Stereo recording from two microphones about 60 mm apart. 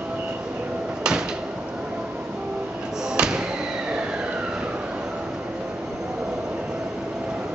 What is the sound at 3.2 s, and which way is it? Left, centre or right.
Slam, centre.